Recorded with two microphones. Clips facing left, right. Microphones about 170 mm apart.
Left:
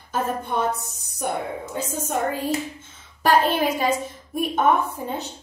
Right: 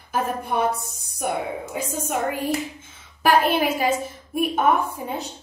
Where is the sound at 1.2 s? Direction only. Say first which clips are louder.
Right 1 dB; 10° right (ahead or behind).